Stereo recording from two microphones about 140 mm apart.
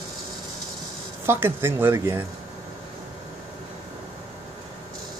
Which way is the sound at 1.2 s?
15° right (ahead or behind).